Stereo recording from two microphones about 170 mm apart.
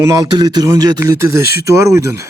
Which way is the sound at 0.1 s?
20° right (ahead or behind).